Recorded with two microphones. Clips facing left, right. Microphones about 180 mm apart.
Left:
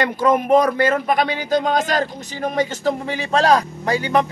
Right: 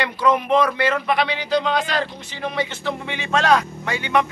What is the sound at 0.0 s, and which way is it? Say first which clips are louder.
Speech: left 2 dB; 45° left (ahead or behind).